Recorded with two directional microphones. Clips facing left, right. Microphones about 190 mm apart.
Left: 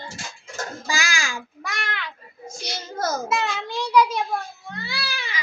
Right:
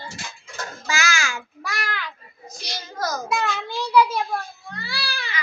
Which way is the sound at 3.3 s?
Centre (ahead or behind).